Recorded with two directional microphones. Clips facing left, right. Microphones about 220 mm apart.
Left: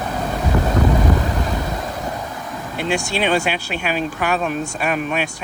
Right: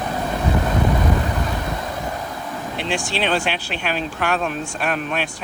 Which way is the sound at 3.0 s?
45° left (ahead or behind).